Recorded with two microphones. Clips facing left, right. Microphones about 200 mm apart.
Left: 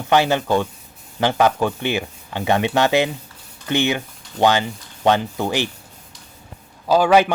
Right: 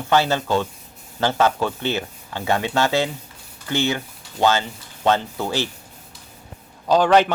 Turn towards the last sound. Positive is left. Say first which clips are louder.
# left 1 dB
turn(degrees=10)  # may be behind; listen again after turning